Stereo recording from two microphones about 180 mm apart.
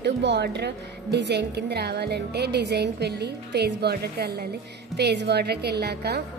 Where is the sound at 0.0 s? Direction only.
70° right (ahead or behind).